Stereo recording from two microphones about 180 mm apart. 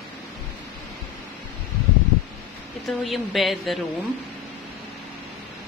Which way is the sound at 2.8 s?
Centre (ahead or behind).